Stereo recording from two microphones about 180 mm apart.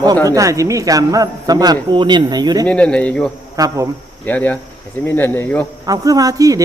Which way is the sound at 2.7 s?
5° left (ahead or behind).